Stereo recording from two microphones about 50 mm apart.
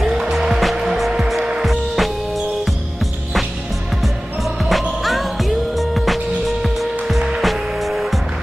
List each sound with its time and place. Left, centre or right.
0.0 s music: centre
5.0 s music: centre